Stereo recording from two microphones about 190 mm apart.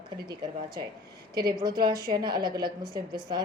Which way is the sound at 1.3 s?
20° right (ahead or behind).